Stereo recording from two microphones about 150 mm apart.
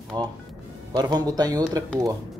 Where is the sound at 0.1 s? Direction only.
30° right (ahead or behind).